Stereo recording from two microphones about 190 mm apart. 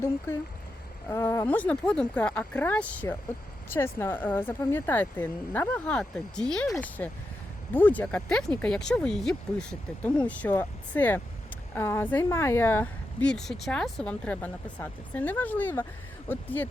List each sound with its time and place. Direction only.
1.1 s speech: 15° left (ahead or behind)